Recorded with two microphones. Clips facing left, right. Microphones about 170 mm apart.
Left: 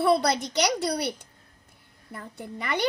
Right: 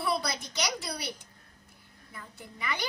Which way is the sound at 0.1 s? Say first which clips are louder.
Left 9 dB; 70° left (ahead or behind).